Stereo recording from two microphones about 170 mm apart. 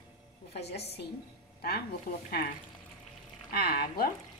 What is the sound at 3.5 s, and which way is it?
Speech, 65° left (ahead or behind).